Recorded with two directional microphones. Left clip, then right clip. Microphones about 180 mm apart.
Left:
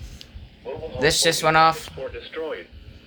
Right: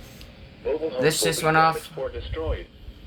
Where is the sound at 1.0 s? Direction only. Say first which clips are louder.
Left 5 dB; 30° left (ahead or behind).